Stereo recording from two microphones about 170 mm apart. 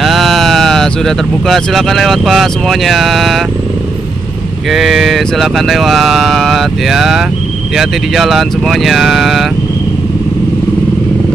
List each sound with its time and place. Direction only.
0.0 s speech: centre (ahead or behind)
4.6 s speech: centre (ahead or behind)